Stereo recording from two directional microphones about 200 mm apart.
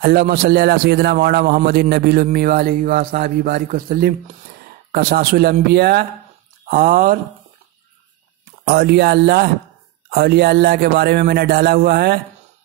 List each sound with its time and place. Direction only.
0.0 s a man's voice: 50° right (ahead or behind)
8.6 s a man's voice: 50° right (ahead or behind)